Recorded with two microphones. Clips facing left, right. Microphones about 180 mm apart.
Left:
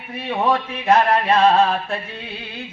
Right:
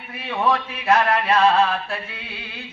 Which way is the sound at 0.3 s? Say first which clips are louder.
Left 2 dB; 30° left (ahead or behind).